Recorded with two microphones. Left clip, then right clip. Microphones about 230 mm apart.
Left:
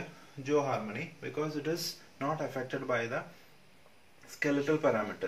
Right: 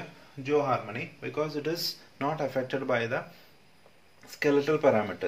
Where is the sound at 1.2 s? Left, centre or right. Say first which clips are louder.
Right 5 dB; right.